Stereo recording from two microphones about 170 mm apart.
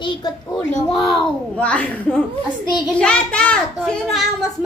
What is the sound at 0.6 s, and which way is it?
A woman's voice, centre (ahead or behind).